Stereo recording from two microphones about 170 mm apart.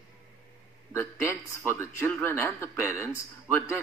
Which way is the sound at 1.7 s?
15° left (ahead or behind).